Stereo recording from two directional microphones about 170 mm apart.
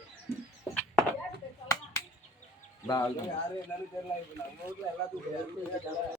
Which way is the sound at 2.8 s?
20° left (ahead or behind).